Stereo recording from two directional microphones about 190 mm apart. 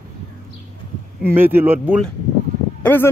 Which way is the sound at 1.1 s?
10° right (ahead or behind).